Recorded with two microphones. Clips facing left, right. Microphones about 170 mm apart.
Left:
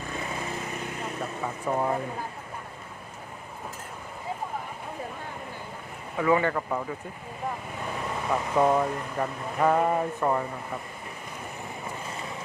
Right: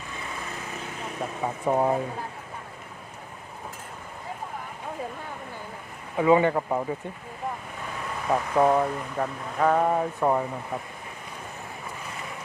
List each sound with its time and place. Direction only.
1.4 s speech: 20° right (ahead or behind)
6.1 s speech: 20° right (ahead or behind)
8.5 s speech: 10° right (ahead or behind)
10.2 s speech: 10° right (ahead or behind)